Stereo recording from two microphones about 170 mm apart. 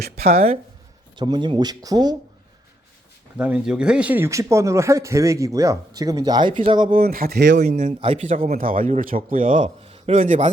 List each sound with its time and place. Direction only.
1.1 s speech: 25° right (ahead or behind)
3.3 s speech: 10° right (ahead or behind); by 6.9 s 30° right (ahead or behind)
6.9 s speech: 60° right (ahead or behind); by 7.6 s 80° right
7.6 s speech: 45° right (ahead or behind)
8.3 s speech: 50° right (ahead or behind)